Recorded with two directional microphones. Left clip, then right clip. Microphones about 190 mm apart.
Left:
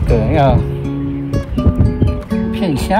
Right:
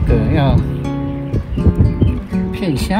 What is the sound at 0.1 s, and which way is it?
Music, 35° left (ahead or behind).